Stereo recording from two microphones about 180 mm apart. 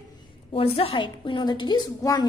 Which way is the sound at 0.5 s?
30° left (ahead or behind).